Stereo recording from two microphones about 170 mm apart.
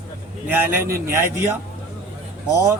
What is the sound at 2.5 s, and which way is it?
Speech, 15° right (ahead or behind).